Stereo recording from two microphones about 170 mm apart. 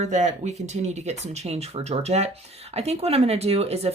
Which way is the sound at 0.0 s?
45° right (ahead or behind).